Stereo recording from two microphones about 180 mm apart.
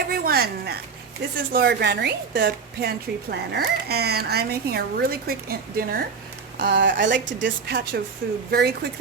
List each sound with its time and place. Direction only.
0.1 s a sound: 55° right (ahead or behind)
1.5 s a woman's voice: 65° right (ahead or behind)
6.6 s a woman's voice: 70° right (ahead or behind)